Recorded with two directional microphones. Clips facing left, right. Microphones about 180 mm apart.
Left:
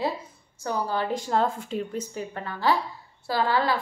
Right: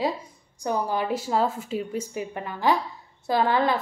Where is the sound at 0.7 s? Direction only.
15° right (ahead or behind).